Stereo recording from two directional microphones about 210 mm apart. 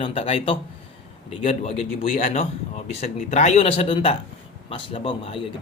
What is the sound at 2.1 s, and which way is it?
A man's voice, 40° left (ahead or behind).